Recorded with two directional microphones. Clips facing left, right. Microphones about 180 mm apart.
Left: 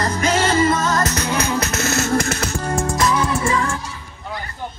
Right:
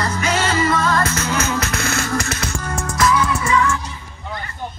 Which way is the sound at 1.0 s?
35° left (ahead or behind).